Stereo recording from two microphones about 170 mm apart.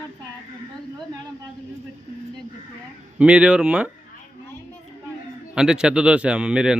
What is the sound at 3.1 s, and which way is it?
Speech, 5° right (ahead or behind).